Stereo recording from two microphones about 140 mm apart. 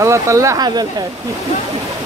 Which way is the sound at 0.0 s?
20° right (ahead or behind).